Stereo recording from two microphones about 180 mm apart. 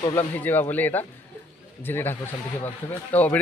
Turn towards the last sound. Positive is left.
turn(degrees=10)  # may be behind; listen again after turning